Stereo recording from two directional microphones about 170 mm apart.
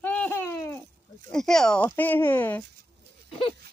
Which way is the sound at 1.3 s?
5° left (ahead or behind).